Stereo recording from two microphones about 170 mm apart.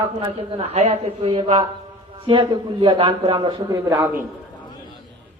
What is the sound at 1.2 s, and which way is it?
A man's voice, 30° right (ahead or behind).